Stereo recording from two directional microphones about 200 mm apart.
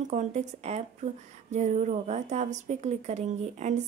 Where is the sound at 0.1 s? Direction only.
35° right (ahead or behind).